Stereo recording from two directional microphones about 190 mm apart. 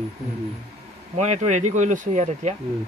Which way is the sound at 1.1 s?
35° right (ahead or behind).